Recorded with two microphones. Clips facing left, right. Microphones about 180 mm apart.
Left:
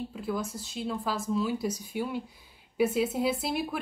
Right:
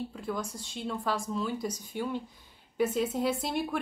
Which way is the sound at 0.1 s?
5° left (ahead or behind).